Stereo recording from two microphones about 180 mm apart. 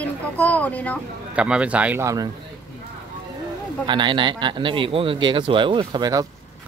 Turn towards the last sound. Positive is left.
turn(degrees=-20)  # may be behind; listen again after turning